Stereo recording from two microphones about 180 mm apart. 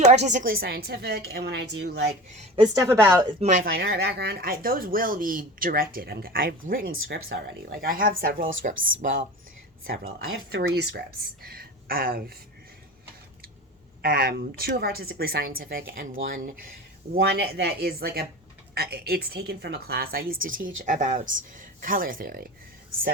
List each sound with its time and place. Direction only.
0.0 s speech: 40° right (ahead or behind); by 2.0 s 70° right (ahead or behind)
2.6 s a woman's voice: 20° right (ahead or behind)
3.4 s speech: 40° right (ahead or behind)
3.8 s speech: 65° right (ahead or behind)
8.7 s speech: 90° right
9.0 s speech: 50° right (ahead or behind)
10.5 s speech: 65° right (ahead or behind)
14.0 s speech: 60° right (ahead or behind)
17.2 s speech: 65° right (ahead or behind)